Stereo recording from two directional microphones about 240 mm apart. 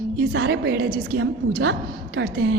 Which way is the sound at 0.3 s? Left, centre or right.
Right.